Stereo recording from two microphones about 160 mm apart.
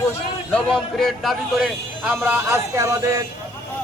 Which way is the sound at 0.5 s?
5° left (ahead or behind).